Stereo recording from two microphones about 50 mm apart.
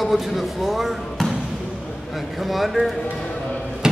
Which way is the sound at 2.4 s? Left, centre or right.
Centre.